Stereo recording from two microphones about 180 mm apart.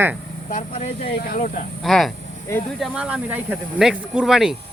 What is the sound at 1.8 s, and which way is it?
Speech, centre (ahead or behind).